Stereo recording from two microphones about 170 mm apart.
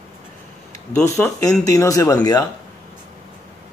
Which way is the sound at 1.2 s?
10° left (ahead or behind).